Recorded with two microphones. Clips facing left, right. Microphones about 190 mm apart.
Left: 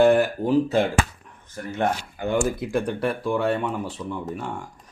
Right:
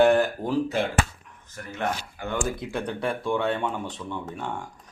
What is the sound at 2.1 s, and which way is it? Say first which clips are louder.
Speech: left 6 dB; 15° left (ahead or behind).